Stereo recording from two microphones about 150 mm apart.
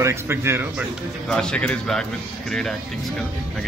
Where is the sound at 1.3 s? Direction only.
5° left (ahead or behind).